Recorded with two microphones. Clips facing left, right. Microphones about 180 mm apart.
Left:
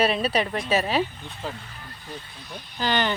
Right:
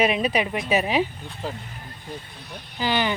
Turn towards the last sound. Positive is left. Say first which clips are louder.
# right 1 dB
turn(degrees=-10)  # may be behind; listen again after turning